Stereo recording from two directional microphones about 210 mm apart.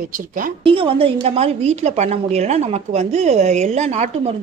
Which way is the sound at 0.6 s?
25° right (ahead or behind).